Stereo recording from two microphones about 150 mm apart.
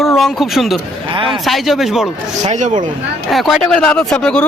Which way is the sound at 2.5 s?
55° right (ahead or behind).